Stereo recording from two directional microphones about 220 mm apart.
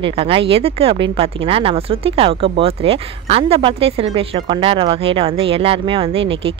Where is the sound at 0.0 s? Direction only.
25° right (ahead or behind).